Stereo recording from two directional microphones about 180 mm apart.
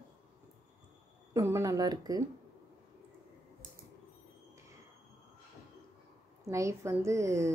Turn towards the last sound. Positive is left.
turn(degrees=-15)  # may be behind; listen again after turning